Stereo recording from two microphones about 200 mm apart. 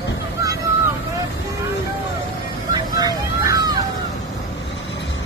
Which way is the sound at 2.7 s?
20° right (ahead or behind).